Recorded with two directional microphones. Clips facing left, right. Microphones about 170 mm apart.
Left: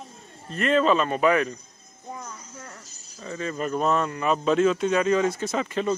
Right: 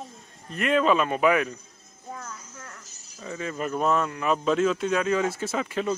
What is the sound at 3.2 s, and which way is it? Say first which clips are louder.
Speech: left 2 dB; 5° right (ahead or behind).